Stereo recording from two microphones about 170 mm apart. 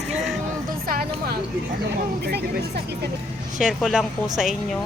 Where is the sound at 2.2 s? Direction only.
70° right (ahead or behind).